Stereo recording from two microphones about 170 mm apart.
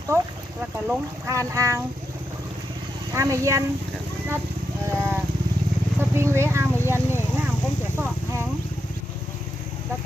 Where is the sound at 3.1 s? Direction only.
20° right (ahead or behind).